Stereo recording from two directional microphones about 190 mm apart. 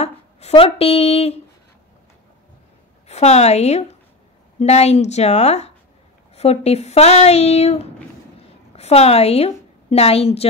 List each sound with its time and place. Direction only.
0.0 s speech: 35° left (ahead or behind)
3.1 s a woman's voice: 35° left (ahead or behind)